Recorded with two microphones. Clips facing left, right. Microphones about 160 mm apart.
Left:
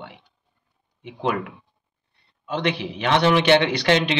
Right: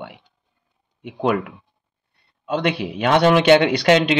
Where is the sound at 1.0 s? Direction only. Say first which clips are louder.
Right 4 dB; 55° right (ahead or behind).